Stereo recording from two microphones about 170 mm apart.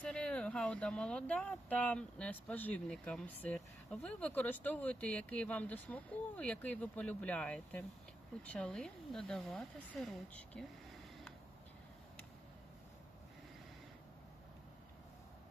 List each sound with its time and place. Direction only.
0.0 s speech: 5° left (ahead or behind)